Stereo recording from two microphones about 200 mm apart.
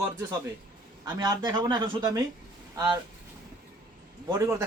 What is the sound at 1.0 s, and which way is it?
Speech, 20° right (ahead or behind).